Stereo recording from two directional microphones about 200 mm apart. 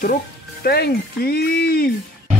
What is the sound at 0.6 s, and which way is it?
Speech, 50° left (ahead or behind).